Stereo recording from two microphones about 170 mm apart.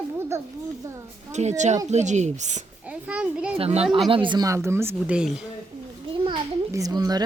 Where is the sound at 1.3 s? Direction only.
40° right (ahead or behind).